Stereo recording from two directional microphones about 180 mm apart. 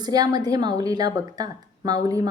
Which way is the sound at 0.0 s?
20° right (ahead or behind).